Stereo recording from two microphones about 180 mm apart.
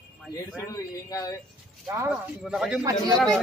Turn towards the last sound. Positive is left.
turn(degrees=0)  # may be behind; listen again after turning